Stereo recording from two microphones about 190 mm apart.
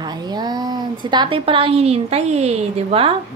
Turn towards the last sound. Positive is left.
turn(degrees=-30)  # may be behind; listen again after turning